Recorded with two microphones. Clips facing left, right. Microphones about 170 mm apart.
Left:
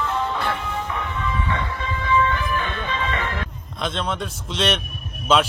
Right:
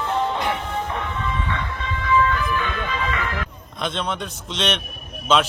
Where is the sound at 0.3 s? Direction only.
20° right (ahead or behind).